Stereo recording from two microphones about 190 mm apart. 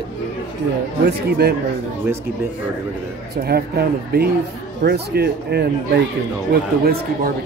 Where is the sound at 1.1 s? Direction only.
55° right (ahead or behind).